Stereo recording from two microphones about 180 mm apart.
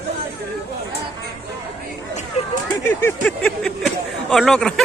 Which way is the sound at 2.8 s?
10° left (ahead or behind).